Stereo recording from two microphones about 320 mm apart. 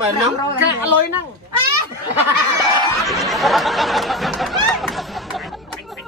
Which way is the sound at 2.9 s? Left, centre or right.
Centre.